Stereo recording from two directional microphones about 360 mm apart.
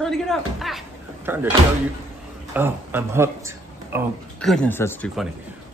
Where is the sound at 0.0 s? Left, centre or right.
Centre.